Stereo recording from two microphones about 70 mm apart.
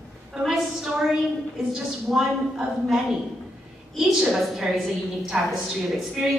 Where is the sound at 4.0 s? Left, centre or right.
Centre.